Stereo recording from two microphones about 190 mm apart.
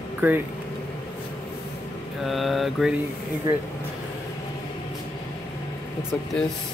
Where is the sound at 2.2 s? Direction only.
Centre (ahead or behind).